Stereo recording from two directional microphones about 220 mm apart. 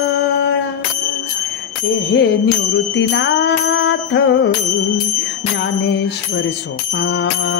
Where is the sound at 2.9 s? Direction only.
55° left (ahead or behind).